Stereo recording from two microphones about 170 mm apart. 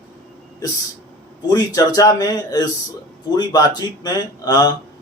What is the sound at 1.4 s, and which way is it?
A man's voice, 20° left (ahead or behind).